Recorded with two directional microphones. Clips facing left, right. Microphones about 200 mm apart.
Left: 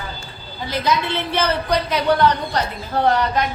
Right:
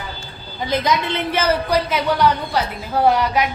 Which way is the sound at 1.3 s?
10° right (ahead or behind).